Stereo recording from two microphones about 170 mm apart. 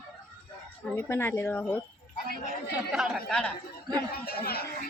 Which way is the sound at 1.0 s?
15° left (ahead or behind).